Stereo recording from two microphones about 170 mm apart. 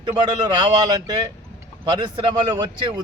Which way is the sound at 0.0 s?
25° right (ahead or behind).